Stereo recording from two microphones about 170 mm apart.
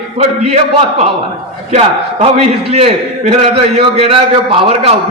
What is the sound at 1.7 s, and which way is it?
A man's voice, 40° right (ahead or behind).